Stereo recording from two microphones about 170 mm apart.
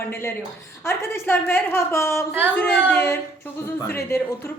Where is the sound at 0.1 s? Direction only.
15° left (ahead or behind).